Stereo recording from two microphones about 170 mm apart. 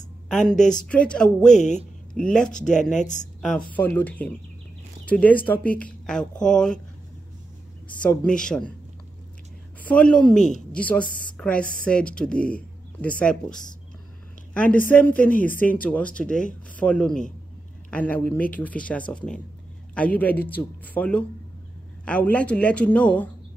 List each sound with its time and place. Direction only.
0.3 s a woman's voice: 5° left (ahead or behind)
1.4 s speech: 45° left (ahead or behind)
2.1 s a woman's voice: 5° left (ahead or behind)
2.5 s speech: 45° left (ahead or behind)
3.3 s speech: 5° left (ahead or behind)
8.0 s a woman's voice: 10° left (ahead or behind)
9.8 s a woman's voice: 5° left (ahead or behind)
14.9 s a woman's voice: 10° left (ahead or behind)